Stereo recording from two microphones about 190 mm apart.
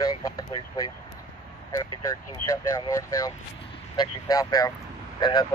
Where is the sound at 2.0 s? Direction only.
15° left (ahead or behind).